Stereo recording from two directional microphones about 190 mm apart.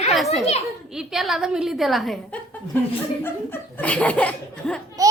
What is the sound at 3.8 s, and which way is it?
Speech, 5° left (ahead or behind).